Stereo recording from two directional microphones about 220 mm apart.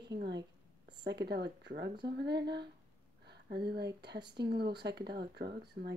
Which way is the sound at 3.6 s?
50° right (ahead or behind).